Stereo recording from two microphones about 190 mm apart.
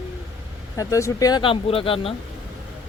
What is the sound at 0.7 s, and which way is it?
Speech, 15° left (ahead or behind).